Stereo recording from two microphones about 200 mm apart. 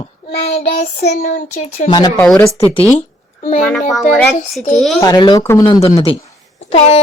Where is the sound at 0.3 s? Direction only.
30° left (ahead or behind).